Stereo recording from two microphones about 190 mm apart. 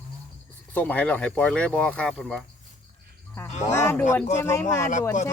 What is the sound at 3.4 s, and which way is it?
Speech, 40° left (ahead or behind).